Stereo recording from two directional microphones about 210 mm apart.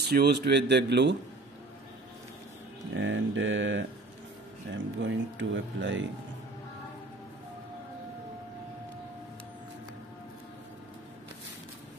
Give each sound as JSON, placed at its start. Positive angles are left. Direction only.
{"t": 0.1, "sound": "a man's voice", "side_deg": -50}
{"t": 3.0, "sound": "speech", "side_deg": -65}